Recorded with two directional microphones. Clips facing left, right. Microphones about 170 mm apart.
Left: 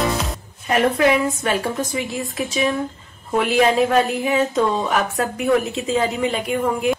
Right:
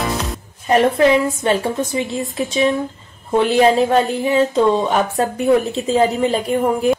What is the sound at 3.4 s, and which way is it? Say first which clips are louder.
Speech: right 3 dB; 30° right (ahead or behind).